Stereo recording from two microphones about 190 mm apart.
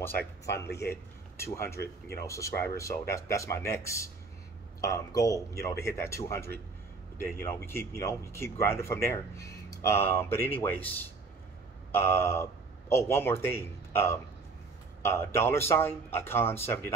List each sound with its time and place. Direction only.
1.3 s speech: 15° left (ahead or behind)